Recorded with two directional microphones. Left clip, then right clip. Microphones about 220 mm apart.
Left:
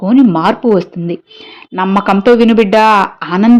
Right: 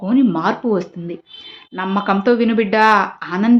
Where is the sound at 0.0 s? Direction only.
35° left (ahead or behind).